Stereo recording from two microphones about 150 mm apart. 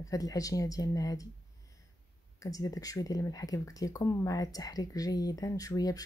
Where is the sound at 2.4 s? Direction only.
25° left (ahead or behind).